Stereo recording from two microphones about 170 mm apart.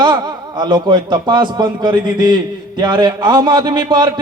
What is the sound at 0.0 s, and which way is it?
A man's voice, 25° right (ahead or behind).